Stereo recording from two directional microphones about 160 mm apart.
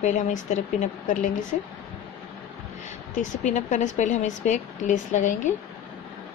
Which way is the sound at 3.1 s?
50° left (ahead or behind).